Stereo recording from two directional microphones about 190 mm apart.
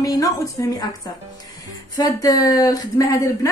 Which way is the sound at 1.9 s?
20° left (ahead or behind).